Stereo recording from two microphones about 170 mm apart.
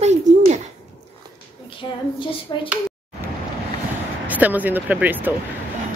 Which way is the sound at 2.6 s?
10° right (ahead or behind).